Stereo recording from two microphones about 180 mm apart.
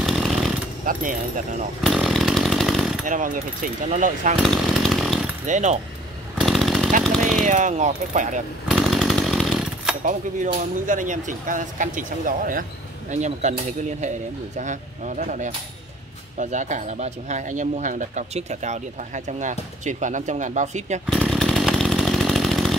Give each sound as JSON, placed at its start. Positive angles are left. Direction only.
{"t": 0.0, "sound": "jackhammer", "side_deg": 0}
{"t": 0.8, "sound": "speech", "side_deg": -50}
{"t": 1.8, "sound": "chainsaw", "side_deg": 0}
{"t": 3.1, "sound": "speech", "side_deg": -45}
{"t": 4.4, "sound": "chainsaw", "side_deg": 0}
{"t": 5.5, "sound": "speech", "side_deg": -40}
{"t": 6.4, "sound": "jackhammer", "side_deg": 0}
{"t": 7.4, "sound": "speech", "side_deg": -45}
{"t": 8.6, "sound": "chainsaw", "side_deg": 0}
{"t": 10.0, "sound": "speech", "side_deg": -45}
{"t": 21.1, "sound": "chainsaw", "side_deg": 5}